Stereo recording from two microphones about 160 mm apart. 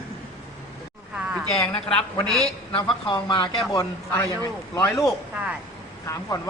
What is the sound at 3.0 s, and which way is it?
A man's voice, 30° left (ahead or behind).